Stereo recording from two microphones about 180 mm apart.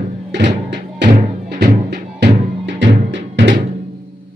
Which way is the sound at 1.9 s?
65° right (ahead or behind).